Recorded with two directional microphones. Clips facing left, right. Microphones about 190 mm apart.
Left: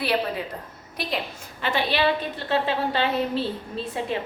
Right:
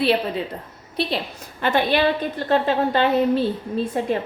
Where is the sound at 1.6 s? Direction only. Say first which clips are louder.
Right 4 dB; 50° right (ahead or behind).